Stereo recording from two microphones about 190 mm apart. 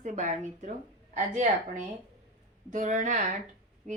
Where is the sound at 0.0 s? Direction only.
40° right (ahead or behind).